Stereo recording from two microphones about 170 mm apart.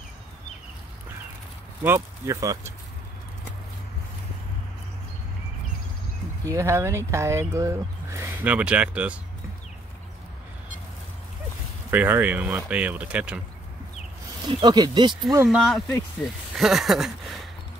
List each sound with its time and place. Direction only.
1.8 s speech: 15° right (ahead or behind)
6.4 s speech: 15° right (ahead or behind)
11.9 s speech: 10° right (ahead or behind)
14.5 s speech: 25° right (ahead or behind)
15.4 s speech: centre (ahead or behind)